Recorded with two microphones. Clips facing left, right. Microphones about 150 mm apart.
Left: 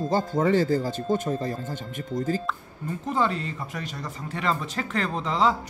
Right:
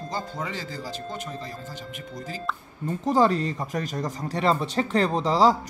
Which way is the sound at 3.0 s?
35° right (ahead or behind).